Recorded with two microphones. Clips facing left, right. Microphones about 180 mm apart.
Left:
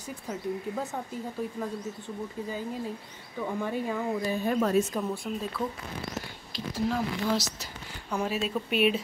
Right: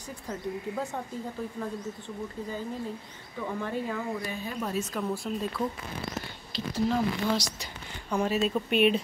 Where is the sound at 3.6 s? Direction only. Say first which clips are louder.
Left 1 dB; 15° left (ahead or behind).